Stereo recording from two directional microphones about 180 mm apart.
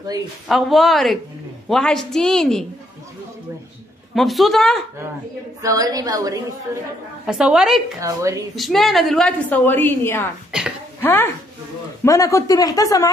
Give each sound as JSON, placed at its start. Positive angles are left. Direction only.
{"t": 0.5, "sound": "a woman's voice", "side_deg": 0}
{"t": 4.1, "sound": "a woman's voice", "side_deg": 0}
{"t": 5.6, "sound": "a woman's voice", "side_deg": -20}
{"t": 7.2, "sound": "a woman's voice", "side_deg": -5}
{"t": 8.0, "sound": "a woman's voice", "side_deg": -15}
{"t": 8.5, "sound": "a woman's voice", "side_deg": 0}
{"t": 10.5, "sound": "hiccup", "side_deg": -5}
{"t": 11.0, "sound": "chopping", "side_deg": 10}
{"t": 12.0, "sound": "speech", "side_deg": 15}